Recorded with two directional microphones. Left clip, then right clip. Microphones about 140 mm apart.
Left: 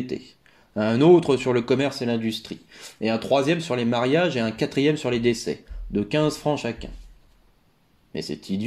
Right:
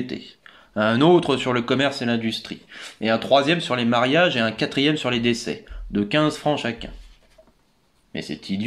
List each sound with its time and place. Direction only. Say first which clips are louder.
0.4 s speech: right 6 dB; 40° left (ahead or behind)
8.1 s speech: even; 45° left (ahead or behind)